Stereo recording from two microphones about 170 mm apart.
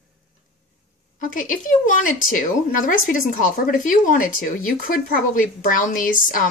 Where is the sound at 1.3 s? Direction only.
50° left (ahead or behind).